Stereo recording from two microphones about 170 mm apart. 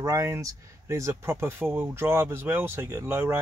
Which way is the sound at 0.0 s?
20° right (ahead or behind).